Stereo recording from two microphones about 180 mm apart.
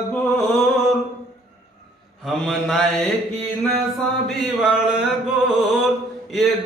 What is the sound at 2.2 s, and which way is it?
Mantra, centre (ahead or behind).